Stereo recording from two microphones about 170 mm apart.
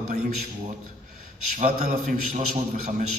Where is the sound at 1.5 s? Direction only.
50° right (ahead or behind).